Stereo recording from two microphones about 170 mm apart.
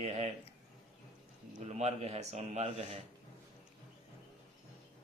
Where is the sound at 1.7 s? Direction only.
40° right (ahead or behind).